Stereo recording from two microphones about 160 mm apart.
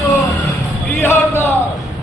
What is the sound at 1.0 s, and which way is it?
Speech, 15° left (ahead or behind).